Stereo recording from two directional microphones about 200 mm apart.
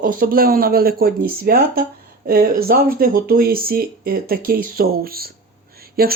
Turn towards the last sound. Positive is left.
turn(degrees=-50)  # may be behind; listen again after turning